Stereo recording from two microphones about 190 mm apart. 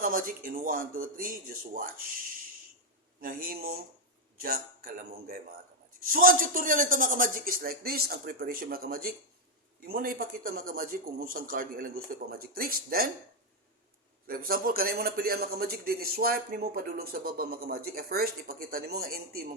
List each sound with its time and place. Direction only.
0.0 s a man's voice: 45° right (ahead or behind)
3.2 s a man's voice: 50° right (ahead or behind)
14.3 s a man's voice: 50° right (ahead or behind)